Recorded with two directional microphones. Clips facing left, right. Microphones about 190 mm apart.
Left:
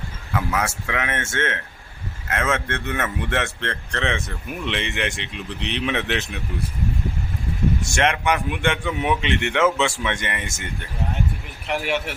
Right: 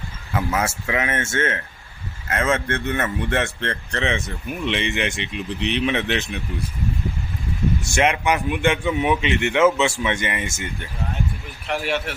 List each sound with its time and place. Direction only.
0.3 s a man's voice: 5° right (ahead or behind)
7.9 s a man's voice: 5° right (ahead or behind)
11.7 s a man's voice: 15° left (ahead or behind)